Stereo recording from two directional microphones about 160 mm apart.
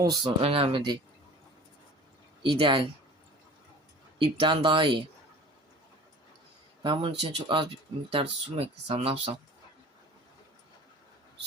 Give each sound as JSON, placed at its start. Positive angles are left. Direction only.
{"t": 0.0, "sound": "speech", "side_deg": -25}
{"t": 2.4, "sound": "speech", "side_deg": -30}
{"t": 4.2, "sound": "speech", "side_deg": -35}
{"t": 6.8, "sound": "speech", "side_deg": -35}